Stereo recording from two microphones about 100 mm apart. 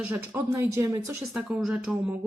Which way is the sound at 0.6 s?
30° right (ahead or behind).